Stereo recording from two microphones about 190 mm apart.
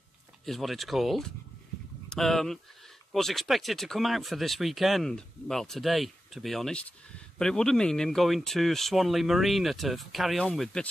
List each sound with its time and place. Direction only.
0.5 s speech: centre (ahead or behind)